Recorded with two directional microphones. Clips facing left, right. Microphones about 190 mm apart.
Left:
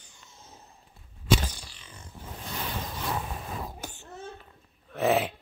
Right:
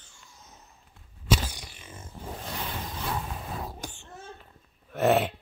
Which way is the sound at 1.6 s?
20° right (ahead or behind).